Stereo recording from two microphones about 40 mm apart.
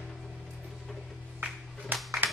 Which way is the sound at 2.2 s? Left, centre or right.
Right.